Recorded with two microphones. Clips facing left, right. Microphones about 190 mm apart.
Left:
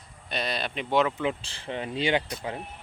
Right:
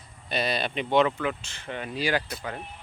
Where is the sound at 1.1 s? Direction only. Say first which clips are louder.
Left 1 dB; 30° left (ahead or behind).